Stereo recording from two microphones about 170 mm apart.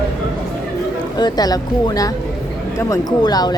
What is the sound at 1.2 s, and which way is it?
Speech, 25° left (ahead or behind).